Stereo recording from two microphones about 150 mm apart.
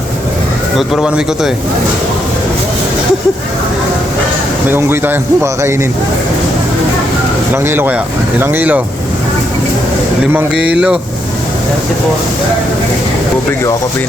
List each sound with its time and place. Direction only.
0.8 s a man's voice: 5° right (ahead or behind)
4.7 s a man's voice: 15° right (ahead or behind)
7.5 s a man's voice: 15° right (ahead or behind)
10.3 s a man's voice: 10° right (ahead or behind)